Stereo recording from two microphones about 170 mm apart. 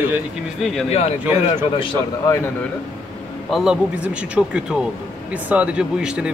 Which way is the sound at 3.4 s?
5° right (ahead or behind).